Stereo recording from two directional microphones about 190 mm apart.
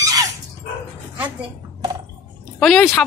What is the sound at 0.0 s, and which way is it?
Dog, 20° right (ahead or behind).